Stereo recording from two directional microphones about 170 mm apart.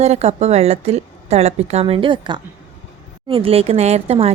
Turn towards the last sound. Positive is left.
turn(degrees=-35)  # may be behind; listen again after turning